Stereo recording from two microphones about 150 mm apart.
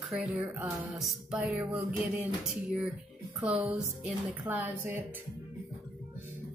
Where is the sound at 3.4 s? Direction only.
10° right (ahead or behind).